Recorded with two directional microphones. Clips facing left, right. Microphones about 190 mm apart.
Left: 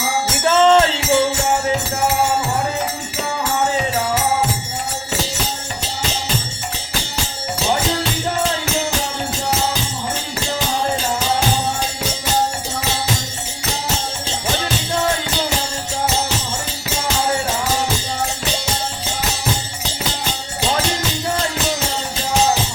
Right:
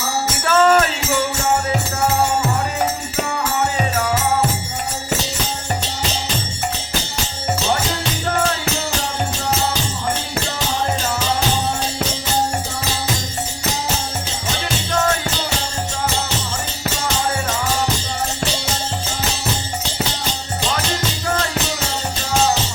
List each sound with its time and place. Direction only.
0.4 s music: 25° left (ahead or behind)